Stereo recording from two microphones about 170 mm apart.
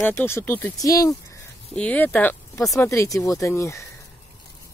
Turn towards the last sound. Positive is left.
turn(degrees=15)  # may be behind; listen again after turning